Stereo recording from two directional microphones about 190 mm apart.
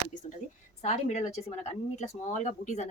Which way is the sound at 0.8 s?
35° left (ahead or behind).